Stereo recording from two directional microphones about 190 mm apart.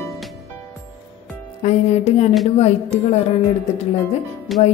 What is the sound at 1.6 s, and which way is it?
Speech, 35° left (ahead or behind).